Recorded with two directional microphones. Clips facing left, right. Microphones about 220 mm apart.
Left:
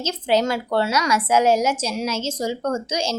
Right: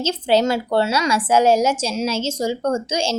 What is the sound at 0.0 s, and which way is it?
A woman's voice, 30° right (ahead or behind).